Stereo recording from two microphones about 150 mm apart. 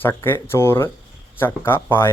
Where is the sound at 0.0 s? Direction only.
15° left (ahead or behind).